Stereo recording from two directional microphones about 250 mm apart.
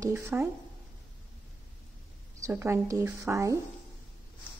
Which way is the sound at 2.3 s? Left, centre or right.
Centre.